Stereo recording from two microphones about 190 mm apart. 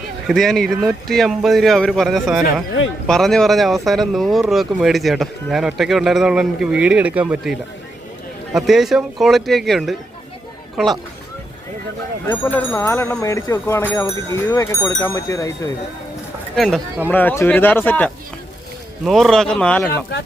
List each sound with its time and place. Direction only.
0.3 s speech: centre (ahead or behind)
12.3 s speech: 10° left (ahead or behind)
16.6 s speech: centre (ahead or behind)